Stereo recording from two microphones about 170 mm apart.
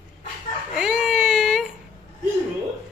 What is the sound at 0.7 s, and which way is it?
Baby cry, 5° right (ahead or behind).